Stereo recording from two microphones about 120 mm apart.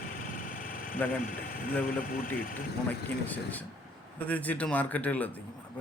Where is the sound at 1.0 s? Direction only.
15° left (ahead or behind).